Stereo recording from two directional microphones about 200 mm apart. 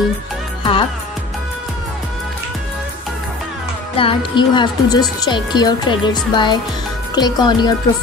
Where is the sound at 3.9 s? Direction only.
25° left (ahead or behind).